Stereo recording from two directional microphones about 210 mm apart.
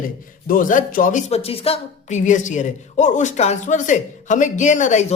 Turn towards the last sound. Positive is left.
turn(degrees=35)  # may be behind; listen again after turning